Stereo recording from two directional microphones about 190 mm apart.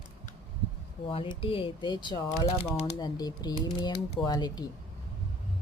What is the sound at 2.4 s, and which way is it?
Speech, 35° left (ahead or behind).